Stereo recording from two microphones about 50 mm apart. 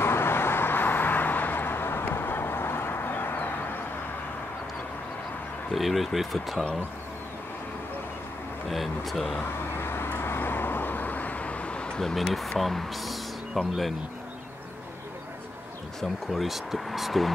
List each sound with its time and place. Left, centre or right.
0.0 s vehicle: left
5.8 s speech: centre
8.6 s speech: centre
9.8 s vehicle: left
12.0 s speech: centre
16.0 s speech: centre